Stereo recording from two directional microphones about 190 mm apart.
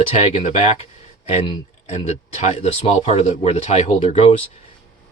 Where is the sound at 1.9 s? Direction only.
35° left (ahead or behind).